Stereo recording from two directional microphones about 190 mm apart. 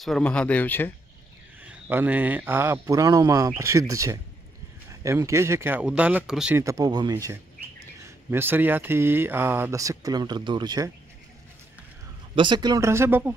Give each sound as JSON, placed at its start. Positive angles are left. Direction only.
{"t": 0.0, "sound": "speech", "side_deg": 5}
{"t": 1.6, "sound": "speech", "side_deg": -10}
{"t": 6.6, "sound": "speech", "side_deg": -20}
{"t": 12.4, "sound": "speech", "side_deg": -25}